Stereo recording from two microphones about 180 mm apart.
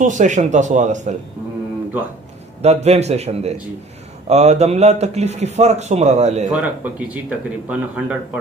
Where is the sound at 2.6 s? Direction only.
35° right (ahead or behind).